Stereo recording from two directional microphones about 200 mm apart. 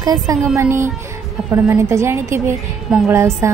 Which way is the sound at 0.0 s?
20° right (ahead or behind).